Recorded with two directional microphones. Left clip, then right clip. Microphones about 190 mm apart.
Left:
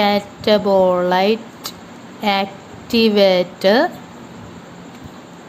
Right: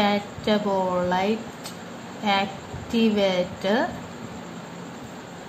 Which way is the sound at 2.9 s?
50° left (ahead or behind).